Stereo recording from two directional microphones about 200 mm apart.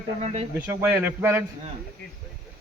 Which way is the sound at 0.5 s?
10° right (ahead or behind).